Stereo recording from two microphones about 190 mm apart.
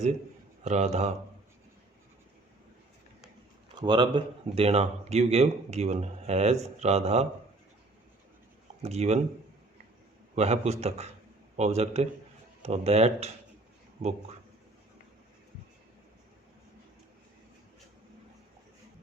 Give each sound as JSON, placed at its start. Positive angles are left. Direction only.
{"t": 0.6, "sound": "speech", "side_deg": -35}
{"t": 3.8, "sound": "speech", "side_deg": -25}
{"t": 8.8, "sound": "speech", "side_deg": -35}
{"t": 10.3, "sound": "speech", "side_deg": -35}